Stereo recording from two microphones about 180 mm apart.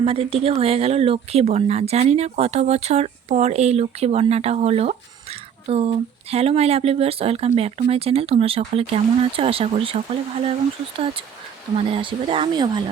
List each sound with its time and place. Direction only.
0.0 s speech: 30° right (ahead or behind)
11.8 s speech: 30° right (ahead or behind)